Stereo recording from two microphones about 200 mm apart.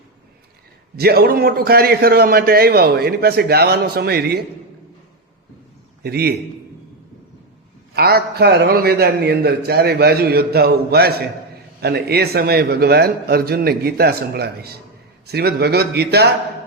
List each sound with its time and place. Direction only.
0.9 s a man's voice: 50° right (ahead or behind)
6.0 s a man's voice: 50° right (ahead or behind)
7.9 s a man's voice: 50° right (ahead or behind)